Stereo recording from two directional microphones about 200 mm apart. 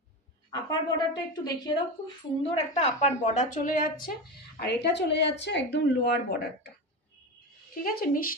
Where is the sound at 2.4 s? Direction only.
30° left (ahead or behind).